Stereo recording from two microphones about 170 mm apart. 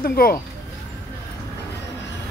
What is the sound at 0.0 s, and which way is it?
Speech, 60° left (ahead or behind).